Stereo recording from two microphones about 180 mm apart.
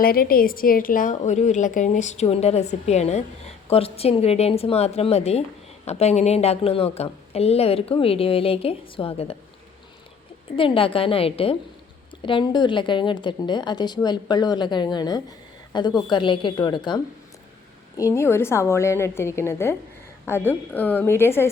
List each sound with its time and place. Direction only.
0.0 s a woman's voice: 55° left (ahead or behind); by 9.3 s 30° left (ahead or behind)
10.5 s a woman's voice: 30° left (ahead or behind); by 21.5 s 15° left (ahead or behind)